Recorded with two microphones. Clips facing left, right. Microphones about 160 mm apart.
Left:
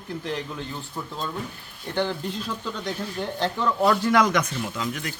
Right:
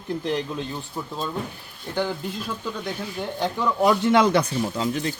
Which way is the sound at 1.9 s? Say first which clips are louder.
Even; 5° right (ahead or behind).